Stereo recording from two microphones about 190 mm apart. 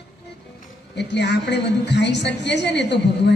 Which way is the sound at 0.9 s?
65° left (ahead or behind).